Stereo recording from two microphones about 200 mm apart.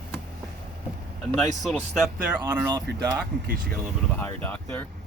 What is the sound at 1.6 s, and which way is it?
Speech, centre (ahead or behind).